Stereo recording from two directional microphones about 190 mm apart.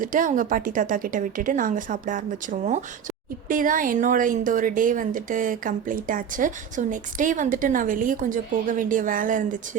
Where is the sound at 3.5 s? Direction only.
45° right (ahead or behind).